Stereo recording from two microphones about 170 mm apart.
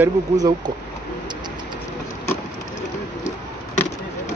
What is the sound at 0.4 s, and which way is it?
Speech, 25° right (ahead or behind).